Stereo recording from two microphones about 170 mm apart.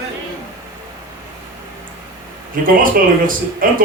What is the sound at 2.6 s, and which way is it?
Speech, 55° right (ahead or behind).